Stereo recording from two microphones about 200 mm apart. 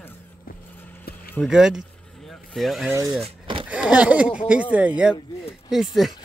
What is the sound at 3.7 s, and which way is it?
Speech, 5° right (ahead or behind).